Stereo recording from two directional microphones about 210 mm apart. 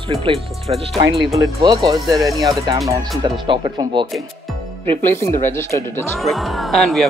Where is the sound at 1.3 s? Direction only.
15° right (ahead or behind).